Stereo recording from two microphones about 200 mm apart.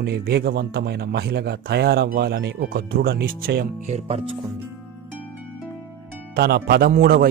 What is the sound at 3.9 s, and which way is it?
Speech, 35° right (ahead or behind).